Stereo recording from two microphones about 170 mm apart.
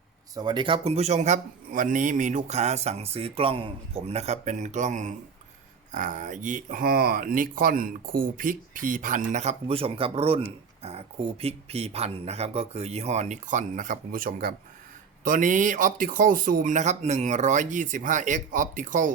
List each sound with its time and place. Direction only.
0.3 s a man's voice: 25° right (ahead or behind); by 19.1 s 50° right (ahead or behind)